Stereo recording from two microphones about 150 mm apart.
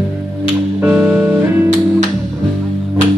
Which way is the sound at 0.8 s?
10° right (ahead or behind).